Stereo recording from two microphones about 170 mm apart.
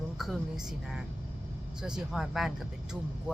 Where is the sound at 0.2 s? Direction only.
Centre (ahead or behind).